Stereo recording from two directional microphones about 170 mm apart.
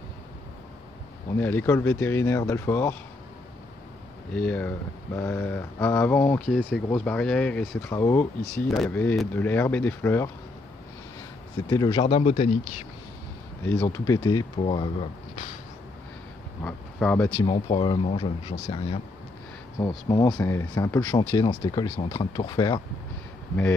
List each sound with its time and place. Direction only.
1.4 s speech: 10° left (ahead or behind)
4.3 s speech: 10° left (ahead or behind)
11.7 s speech: 25° left (ahead or behind)
13.9 s speech: 20° left (ahead or behind)
16.6 s speech: 10° left (ahead or behind)
17.5 s speech: 30° left (ahead or behind); by 21.2 s 10° left (ahead or behind)
21.5 s speech: 30° left (ahead or behind)